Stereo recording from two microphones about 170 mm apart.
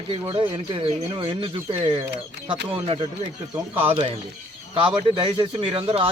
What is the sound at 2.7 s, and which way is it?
Speech, 30° right (ahead or behind).